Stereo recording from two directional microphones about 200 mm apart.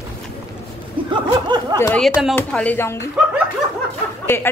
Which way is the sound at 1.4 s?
20° right (ahead or behind).